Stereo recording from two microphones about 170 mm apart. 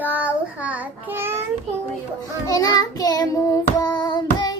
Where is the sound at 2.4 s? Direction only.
20° left (ahead or behind).